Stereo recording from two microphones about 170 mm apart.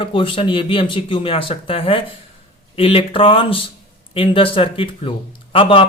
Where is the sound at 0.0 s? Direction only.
30° left (ahead or behind).